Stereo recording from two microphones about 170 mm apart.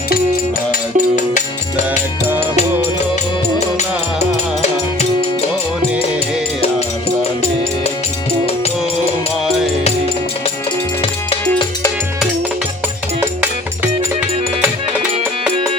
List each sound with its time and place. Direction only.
0.7 s music: 50° left (ahead or behind)
3.8 s music: 40° left (ahead or behind)